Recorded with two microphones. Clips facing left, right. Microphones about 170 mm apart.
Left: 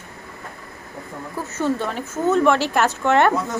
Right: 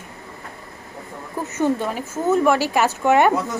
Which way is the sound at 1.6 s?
10° right (ahead or behind).